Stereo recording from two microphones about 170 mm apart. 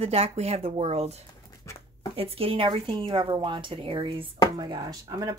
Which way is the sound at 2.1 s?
35° right (ahead or behind).